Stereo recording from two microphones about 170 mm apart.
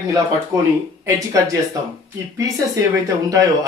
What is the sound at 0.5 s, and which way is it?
A man's voice, 15° right (ahead or behind).